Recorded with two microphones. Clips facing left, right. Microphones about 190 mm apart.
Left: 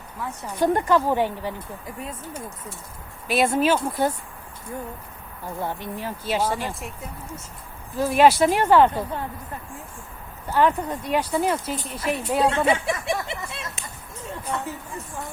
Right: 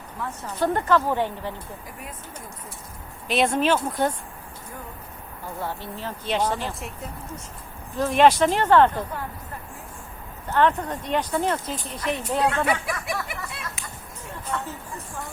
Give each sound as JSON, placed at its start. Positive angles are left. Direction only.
{"t": 0.4, "sound": "speech", "side_deg": 15}
{"t": 3.2, "sound": "speech", "side_deg": 5}
{"t": 5.6, "sound": "speech", "side_deg": 15}
{"t": 7.9, "sound": "speech", "side_deg": 5}
{"t": 10.5, "sound": "speech", "side_deg": 10}
{"t": 12.4, "sound": "speech", "side_deg": 25}